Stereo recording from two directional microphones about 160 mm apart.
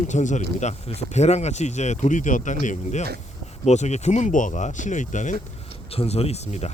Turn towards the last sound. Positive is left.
turn(degrees=40)  # may be behind; listen again after turning